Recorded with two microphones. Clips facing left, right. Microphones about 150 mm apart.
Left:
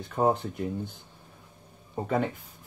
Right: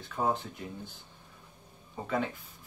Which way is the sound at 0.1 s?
45° left (ahead or behind).